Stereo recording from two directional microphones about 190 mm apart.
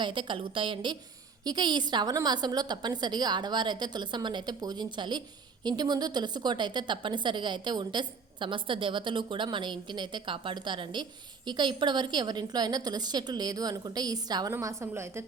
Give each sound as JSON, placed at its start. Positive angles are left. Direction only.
{"t": 0.0, "sound": "a woman's voice", "side_deg": -25}